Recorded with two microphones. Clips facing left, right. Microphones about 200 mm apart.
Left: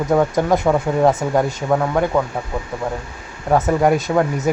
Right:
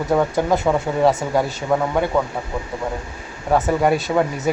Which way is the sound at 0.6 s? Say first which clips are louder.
Left 2 dB; centre (ahead or behind).